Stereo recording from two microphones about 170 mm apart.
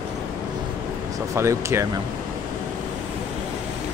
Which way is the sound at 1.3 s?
15° right (ahead or behind).